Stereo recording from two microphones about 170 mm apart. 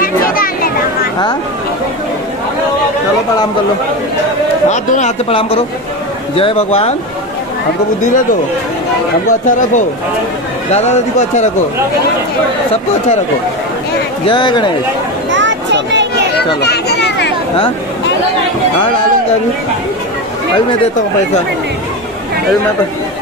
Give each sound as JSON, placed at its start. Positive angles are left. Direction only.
{"t": 0.0, "sound": "a sound", "side_deg": 55}
{"t": 4.6, "sound": "speech", "side_deg": 45}
{"t": 10.7, "sound": "speech", "side_deg": 40}
{"t": 14.2, "sound": "speech", "side_deg": 25}
{"t": 15.3, "sound": "a sound", "side_deg": -90}
{"t": 16.6, "sound": "chatter", "side_deg": 75}